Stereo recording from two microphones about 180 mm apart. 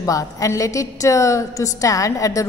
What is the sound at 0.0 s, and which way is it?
A woman's voice, 20° left (ahead or behind).